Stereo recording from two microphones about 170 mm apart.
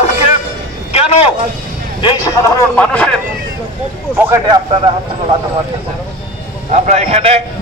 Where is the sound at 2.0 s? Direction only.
25° left (ahead or behind).